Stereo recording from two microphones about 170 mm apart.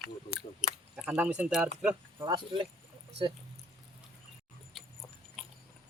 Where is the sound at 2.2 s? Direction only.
30° right (ahead or behind).